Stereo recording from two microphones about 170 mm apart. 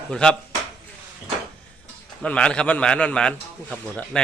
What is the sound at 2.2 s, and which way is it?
A man's voice, 5° left (ahead or behind).